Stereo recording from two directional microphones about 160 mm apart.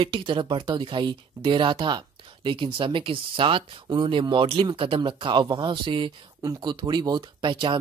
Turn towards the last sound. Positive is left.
turn(degrees=-30)  # may be behind; listen again after turning